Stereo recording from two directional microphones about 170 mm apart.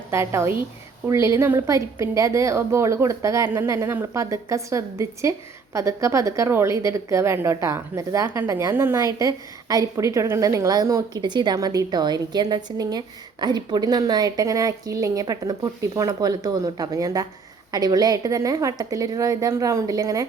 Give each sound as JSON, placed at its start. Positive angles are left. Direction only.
{"t": 0.1, "sound": "a woman's voice", "side_deg": -15}